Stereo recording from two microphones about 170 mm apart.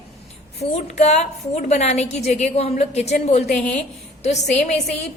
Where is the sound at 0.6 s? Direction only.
45° left (ahead or behind).